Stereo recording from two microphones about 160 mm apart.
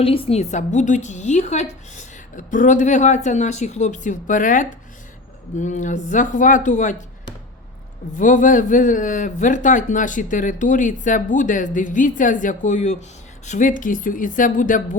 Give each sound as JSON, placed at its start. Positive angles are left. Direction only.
{"t": 0.0, "sound": "a man's voice", "side_deg": 35}
{"t": 8.2, "sound": "a man's voice", "side_deg": 55}